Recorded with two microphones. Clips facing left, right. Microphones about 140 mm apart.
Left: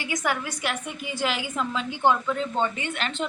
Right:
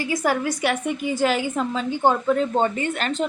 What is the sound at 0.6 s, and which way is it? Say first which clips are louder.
A woman's voice: right 8 dB; 55° right (ahead or behind).